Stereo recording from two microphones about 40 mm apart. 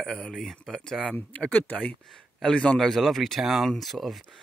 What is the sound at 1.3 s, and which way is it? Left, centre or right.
Speech, left.